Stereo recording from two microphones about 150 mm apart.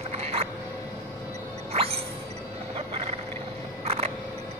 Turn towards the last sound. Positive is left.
turn(degrees=-45)  # may be behind; listen again after turning